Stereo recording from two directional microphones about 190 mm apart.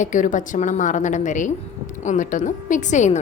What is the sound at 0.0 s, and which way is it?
A woman's voice, 40° left (ahead or behind).